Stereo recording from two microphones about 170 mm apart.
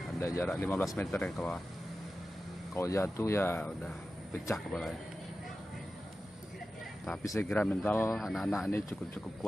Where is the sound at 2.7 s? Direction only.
15° left (ahead or behind).